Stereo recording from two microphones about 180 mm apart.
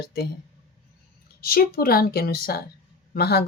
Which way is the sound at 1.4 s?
55° left (ahead or behind).